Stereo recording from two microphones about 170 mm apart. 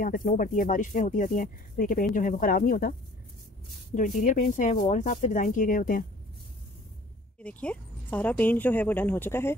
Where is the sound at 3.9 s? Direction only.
50° left (ahead or behind).